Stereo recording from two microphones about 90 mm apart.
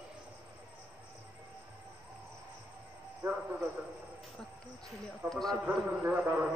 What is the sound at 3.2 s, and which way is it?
Cricket, 25° right (ahead or behind).